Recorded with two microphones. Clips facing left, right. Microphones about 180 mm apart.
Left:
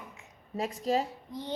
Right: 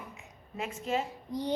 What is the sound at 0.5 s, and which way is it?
Speech, 35° left (ahead or behind).